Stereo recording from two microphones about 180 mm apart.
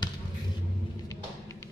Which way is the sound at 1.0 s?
15° left (ahead or behind).